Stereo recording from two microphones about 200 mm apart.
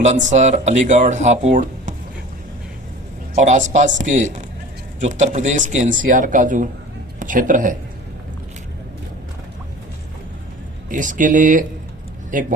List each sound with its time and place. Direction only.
0.0 s speech: 35° right (ahead or behind)
3.3 s speech: 35° right (ahead or behind)
10.8 s speech: 40° right (ahead or behind)